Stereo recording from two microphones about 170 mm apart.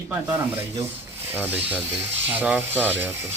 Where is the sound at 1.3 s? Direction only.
10° right (ahead or behind).